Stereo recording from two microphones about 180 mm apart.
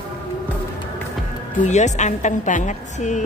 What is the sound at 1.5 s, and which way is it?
A woman's voice, 40° left (ahead or behind).